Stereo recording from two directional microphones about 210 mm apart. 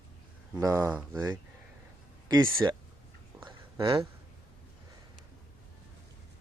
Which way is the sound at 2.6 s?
15° right (ahead or behind).